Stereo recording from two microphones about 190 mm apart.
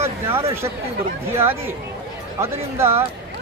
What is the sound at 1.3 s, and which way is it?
Speech, 10° right (ahead or behind).